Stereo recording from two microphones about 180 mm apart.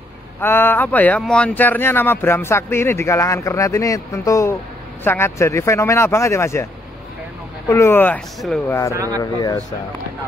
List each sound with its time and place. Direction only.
0.4 s speech: 10° left (ahead or behind)
8.9 s speech: 20° right (ahead or behind)
9.2 s speech: 20° left (ahead or behind)